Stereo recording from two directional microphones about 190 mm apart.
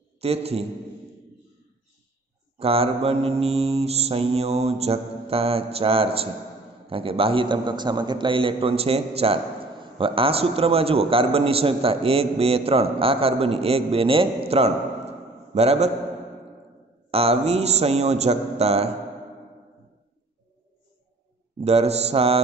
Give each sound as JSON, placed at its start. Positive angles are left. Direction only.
{"t": 0.2, "sound": "mantra", "side_deg": -30}
{"t": 2.6, "sound": "mantra", "side_deg": -30}
{"t": 6.9, "sound": "a man's voice", "side_deg": -30}
{"t": 17.1, "sound": "mantra", "side_deg": -30}
{"t": 21.5, "sound": "mantra", "side_deg": -35}